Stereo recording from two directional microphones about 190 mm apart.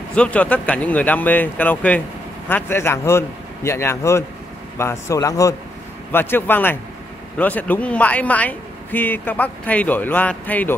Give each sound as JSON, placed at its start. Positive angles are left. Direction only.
{"t": 0.1, "sound": "speech", "side_deg": 5}